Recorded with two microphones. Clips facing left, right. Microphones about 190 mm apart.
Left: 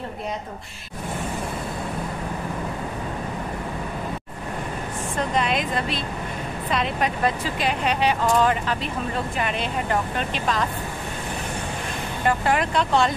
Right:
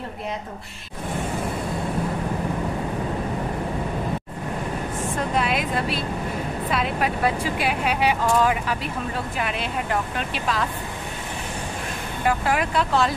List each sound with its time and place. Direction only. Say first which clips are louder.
5.3 s speech: even; 5° right (ahead or behind)
12.3 s speech: left 1 dB; 5° right (ahead or behind)